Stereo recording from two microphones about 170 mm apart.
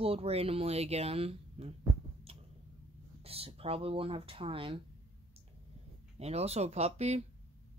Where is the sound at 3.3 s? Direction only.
35° right (ahead or behind).